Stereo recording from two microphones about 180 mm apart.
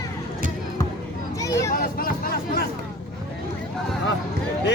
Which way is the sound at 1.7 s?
50° left (ahead or behind).